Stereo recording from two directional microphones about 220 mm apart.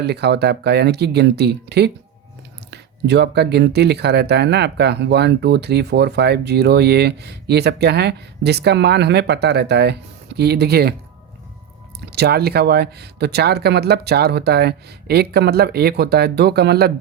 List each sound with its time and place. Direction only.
0.0 s speech: 50° right (ahead or behind)
12.1 s speech: 45° right (ahead or behind)